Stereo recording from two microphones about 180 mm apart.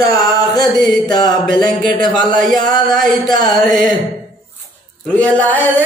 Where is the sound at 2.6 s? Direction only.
20° left (ahead or behind).